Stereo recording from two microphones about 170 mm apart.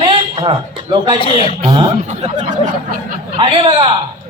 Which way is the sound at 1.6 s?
25° right (ahead or behind).